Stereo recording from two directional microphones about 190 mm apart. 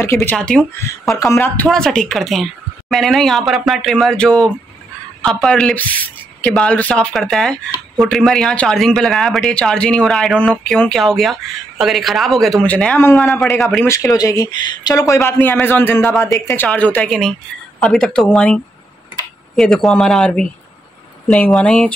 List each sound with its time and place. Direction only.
0.0 s speech: 10° left (ahead or behind)
1.1 s speech: 15° left (ahead or behind)
13.8 s speech: 15° left (ahead or behind)